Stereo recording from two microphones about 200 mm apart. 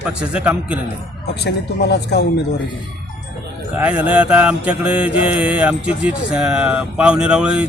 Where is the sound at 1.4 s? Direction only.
55° left (ahead or behind).